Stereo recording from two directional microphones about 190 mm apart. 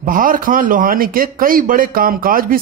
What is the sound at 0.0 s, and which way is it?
A man's voice, 45° right (ahead or behind).